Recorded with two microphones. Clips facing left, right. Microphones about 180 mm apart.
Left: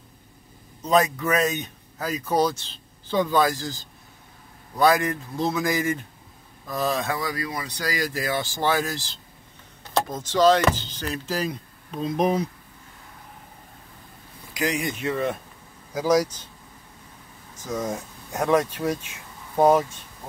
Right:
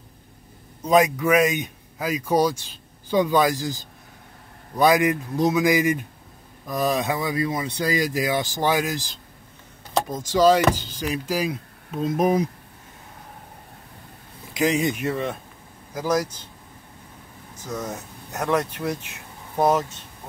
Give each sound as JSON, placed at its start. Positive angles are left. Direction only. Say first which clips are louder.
{"t": 0.8, "sound": "speech", "louder": "right 3 dB", "side_deg": -15}
{"t": 14.5, "sound": "speech", "louder": "right 5 dB", "side_deg": -20}
{"t": 15.0, "sound": "speech", "louder": "right 1 dB", "side_deg": -5}
{"t": 15.9, "sound": "speech", "louder": "left 3 dB", "side_deg": 10}
{"t": 17.6, "sound": "speech", "louder": "left 3 dB", "side_deg": 10}
{"t": 18.9, "sound": "speech", "louder": "right 1 dB", "side_deg": -65}
{"t": 19.5, "sound": "speech", "louder": "left 2 dB", "side_deg": 10}